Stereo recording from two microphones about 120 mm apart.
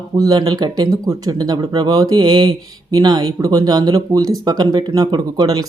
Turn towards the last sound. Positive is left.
turn(degrees=-35)  # may be behind; listen again after turning